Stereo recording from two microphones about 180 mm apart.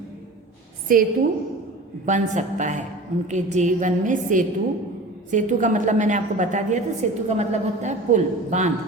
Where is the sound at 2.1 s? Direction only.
45° right (ahead or behind).